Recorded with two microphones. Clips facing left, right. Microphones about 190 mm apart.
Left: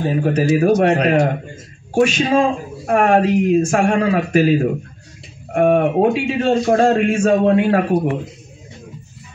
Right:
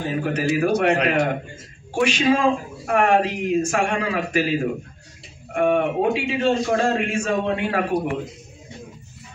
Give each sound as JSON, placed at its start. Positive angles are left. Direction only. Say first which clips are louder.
{"t": 0.2, "sound": "a man's voice", "louder": "left 5 dB", "side_deg": 40}